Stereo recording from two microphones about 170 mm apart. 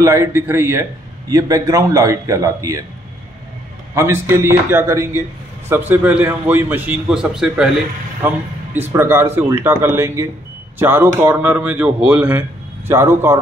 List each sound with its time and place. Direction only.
0.0 s a man's voice: 15° right (ahead or behind)
3.9 s a man's voice: 15° right (ahead or behind)